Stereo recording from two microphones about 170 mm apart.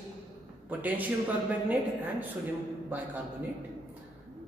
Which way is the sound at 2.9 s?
10° right (ahead or behind).